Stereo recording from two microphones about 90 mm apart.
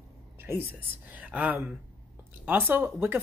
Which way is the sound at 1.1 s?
15° right (ahead or behind).